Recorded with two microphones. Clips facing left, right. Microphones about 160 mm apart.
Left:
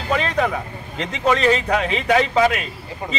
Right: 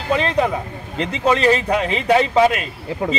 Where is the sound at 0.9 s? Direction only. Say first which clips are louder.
Right 2 dB; 35° right (ahead or behind).